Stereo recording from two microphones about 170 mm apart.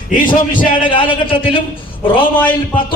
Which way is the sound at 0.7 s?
30° left (ahead or behind).